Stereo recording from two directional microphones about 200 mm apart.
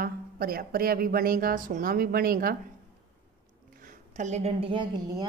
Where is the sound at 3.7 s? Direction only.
40° right (ahead or behind); by 5.2 s 20° right (ahead or behind).